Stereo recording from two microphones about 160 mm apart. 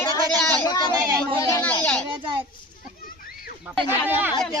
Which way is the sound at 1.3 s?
20° left (ahead or behind).